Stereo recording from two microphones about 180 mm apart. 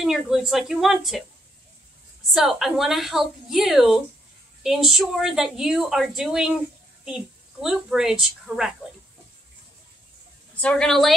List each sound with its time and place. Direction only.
0.0 s a woman's voice: centre (ahead or behind)
2.3 s a woman's voice: centre (ahead or behind)
10.5 s a woman's voice: 5° left (ahead or behind)